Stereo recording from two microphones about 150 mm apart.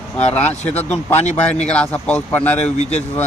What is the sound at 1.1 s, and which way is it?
Speech, 50° left (ahead or behind).